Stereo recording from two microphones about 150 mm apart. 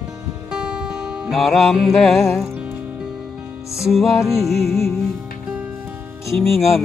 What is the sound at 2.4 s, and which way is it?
Music, 10° right (ahead or behind).